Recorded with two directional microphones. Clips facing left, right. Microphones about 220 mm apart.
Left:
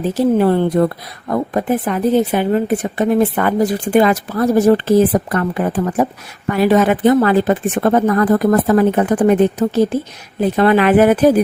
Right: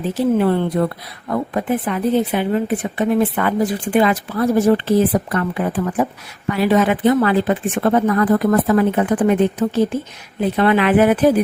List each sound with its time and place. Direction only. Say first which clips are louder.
0.2 s a woman's voice: left 3 dB; 40° left (ahead or behind)